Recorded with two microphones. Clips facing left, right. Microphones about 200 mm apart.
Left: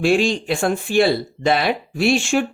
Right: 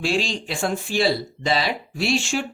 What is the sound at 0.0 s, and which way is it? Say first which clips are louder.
Speech: left 7 dB; 55° left (ahead or behind).